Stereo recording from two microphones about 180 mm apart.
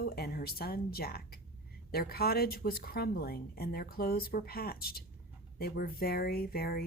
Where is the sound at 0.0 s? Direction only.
60° left (ahead or behind).